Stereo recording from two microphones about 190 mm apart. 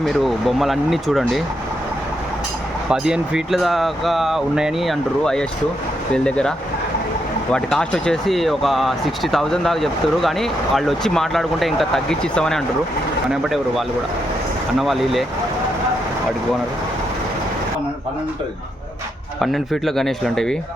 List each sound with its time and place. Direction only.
0.0 s speech: centre (ahead or behind)
2.9 s speech: 5° right (ahead or behind)
7.5 s speech: 5° left (ahead or behind)
19.4 s speech: centre (ahead or behind)